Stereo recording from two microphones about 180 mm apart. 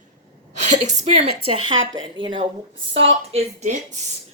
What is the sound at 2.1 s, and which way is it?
Speech, 25° right (ahead or behind).